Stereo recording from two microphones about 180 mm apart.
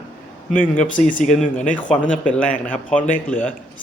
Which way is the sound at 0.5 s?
45° left (ahead or behind).